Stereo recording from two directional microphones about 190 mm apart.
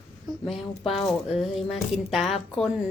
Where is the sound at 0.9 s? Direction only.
Centre (ahead or behind).